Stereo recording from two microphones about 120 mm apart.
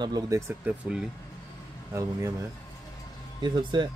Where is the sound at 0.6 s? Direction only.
10° right (ahead or behind).